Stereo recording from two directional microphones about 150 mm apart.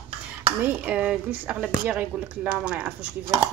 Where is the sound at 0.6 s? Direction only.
10° right (ahead or behind).